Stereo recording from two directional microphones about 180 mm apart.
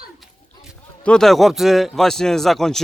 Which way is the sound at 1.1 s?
Centre (ahead or behind).